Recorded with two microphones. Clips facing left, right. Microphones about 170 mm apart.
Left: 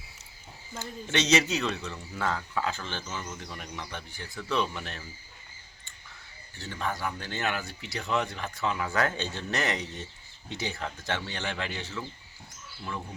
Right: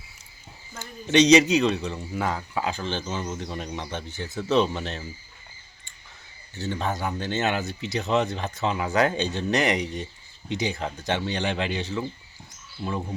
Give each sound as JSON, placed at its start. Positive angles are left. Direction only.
{"t": 1.0, "sound": "a man's voice", "side_deg": -15}
{"t": 6.6, "sound": "a man's voice", "side_deg": -25}